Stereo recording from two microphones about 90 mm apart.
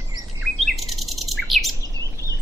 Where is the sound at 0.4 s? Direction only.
Centre (ahead or behind).